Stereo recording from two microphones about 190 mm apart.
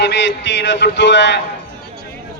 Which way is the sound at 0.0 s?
65° left (ahead or behind).